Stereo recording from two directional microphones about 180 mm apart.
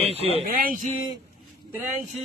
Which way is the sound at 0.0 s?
35° right (ahead or behind).